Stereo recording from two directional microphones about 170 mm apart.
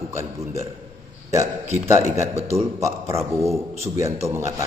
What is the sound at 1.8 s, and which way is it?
A man's voice, 15° right (ahead or behind).